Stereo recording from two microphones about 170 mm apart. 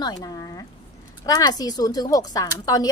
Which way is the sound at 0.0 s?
20° left (ahead or behind).